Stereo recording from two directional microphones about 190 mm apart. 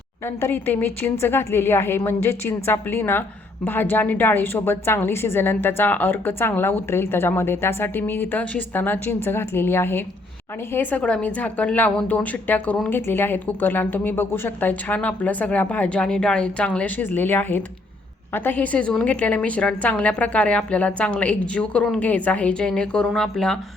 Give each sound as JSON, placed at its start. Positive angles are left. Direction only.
{"t": 0.4, "sound": "a woman's voice", "side_deg": 10}